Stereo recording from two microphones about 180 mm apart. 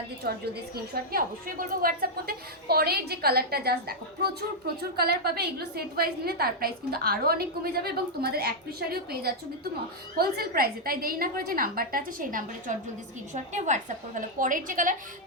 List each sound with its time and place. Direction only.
0.2 s a woman's voice: 60° right (ahead or behind)